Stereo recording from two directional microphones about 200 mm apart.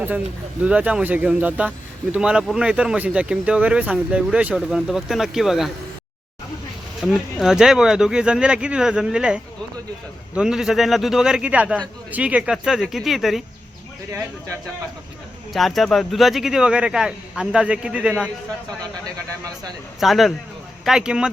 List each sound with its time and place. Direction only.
0.6 s speech: 5° right (ahead or behind)
7.0 s speech: centre (ahead or behind)
14.1 s speech: 10° right (ahead or behind)
15.5 s speech: centre (ahead or behind)
20.0 s speech: centre (ahead or behind)